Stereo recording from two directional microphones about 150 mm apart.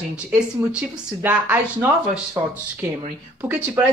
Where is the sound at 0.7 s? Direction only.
10° right (ahead or behind).